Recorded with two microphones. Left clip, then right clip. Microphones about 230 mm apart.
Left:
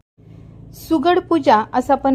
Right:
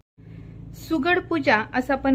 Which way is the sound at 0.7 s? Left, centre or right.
Centre.